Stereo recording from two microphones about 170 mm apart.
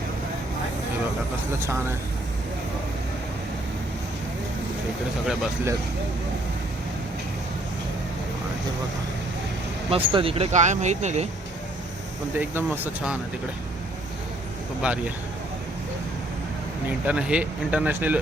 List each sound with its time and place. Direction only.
1.6 s speech: 15° right (ahead or behind)
9.9 s speech: 30° right (ahead or behind)
12.4 s speech: 10° right (ahead or behind)
14.8 s speech: 5° right (ahead or behind)
17.1 s speech: 5° right (ahead or behind)